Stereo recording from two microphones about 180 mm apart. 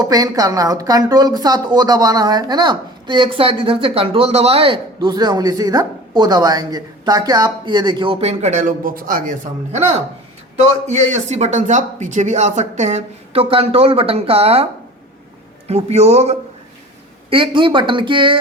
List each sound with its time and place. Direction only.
0.0 s speech: 20° right (ahead or behind); by 9.3 s 50° right (ahead or behind)
10.8 s speech: 40° right (ahead or behind)